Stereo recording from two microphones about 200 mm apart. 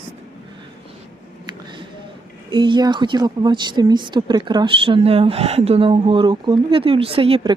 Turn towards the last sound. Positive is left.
turn(degrees=-30)  # may be behind; listen again after turning